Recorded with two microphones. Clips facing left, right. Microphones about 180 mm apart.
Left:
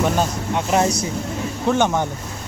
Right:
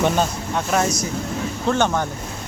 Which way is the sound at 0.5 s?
20° left (ahead or behind).